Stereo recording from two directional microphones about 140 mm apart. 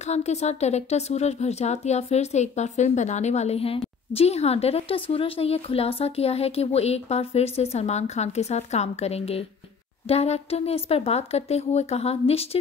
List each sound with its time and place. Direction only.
0.0 s speech: 50° left (ahead or behind)